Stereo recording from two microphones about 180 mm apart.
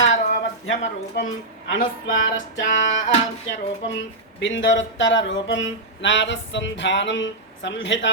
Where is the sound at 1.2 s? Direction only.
70° left (ahead or behind).